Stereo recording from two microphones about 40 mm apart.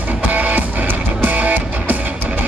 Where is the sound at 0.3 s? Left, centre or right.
Right.